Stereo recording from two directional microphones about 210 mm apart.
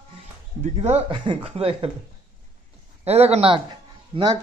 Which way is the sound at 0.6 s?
30° right (ahead or behind).